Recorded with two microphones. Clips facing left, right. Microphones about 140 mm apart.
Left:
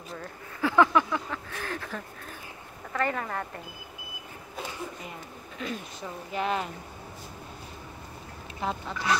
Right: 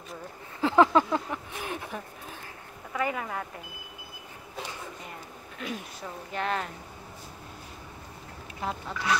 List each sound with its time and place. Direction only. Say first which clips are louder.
0.6 s a sound: right 1 dB; 30° right (ahead or behind)
1.3 s a sound: even; 15° right (ahead or behind)
2.9 s speech: left 1 dB; 5° right (ahead or behind)
5.6 s speech: left 1 dB; 5° right (ahead or behind)
6.3 s speech: left 2 dB; 5° left (ahead or behind)
8.5 s speech: left 2 dB; 5° right (ahead or behind)